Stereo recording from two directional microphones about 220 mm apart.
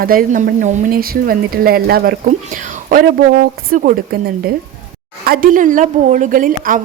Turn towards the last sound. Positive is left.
turn(degrees=-40)  # may be behind; listen again after turning